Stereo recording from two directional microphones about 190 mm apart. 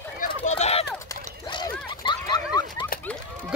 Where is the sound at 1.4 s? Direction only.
25° left (ahead or behind).